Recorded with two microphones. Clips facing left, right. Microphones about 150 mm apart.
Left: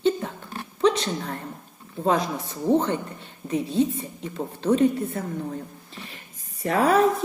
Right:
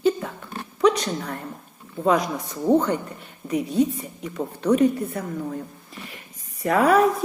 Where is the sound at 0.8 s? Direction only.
30° left (ahead or behind).